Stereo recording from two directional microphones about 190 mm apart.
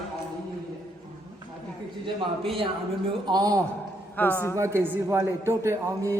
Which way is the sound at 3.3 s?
20° right (ahead or behind).